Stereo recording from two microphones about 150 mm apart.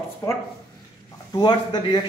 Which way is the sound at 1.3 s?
30° left (ahead or behind).